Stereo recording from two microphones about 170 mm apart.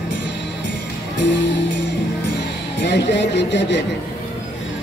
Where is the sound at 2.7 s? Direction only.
85° left.